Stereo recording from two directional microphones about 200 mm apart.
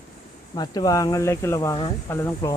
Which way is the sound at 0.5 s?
20° left (ahead or behind).